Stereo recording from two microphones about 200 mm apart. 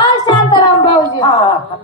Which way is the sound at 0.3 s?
20° left (ahead or behind).